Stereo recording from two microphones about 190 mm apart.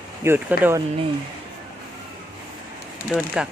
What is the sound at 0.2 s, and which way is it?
Speech, 10° right (ahead or behind).